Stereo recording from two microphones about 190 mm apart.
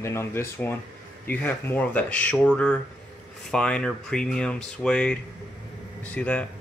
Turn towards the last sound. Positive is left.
turn(degrees=5)  # may be behind; listen again after turning